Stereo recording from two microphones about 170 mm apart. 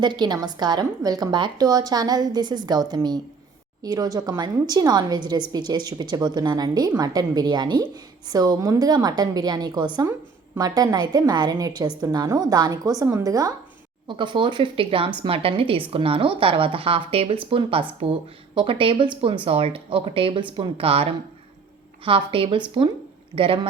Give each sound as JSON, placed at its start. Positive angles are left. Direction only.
{"t": 0.0, "sound": "a woman's voice", "side_deg": -25}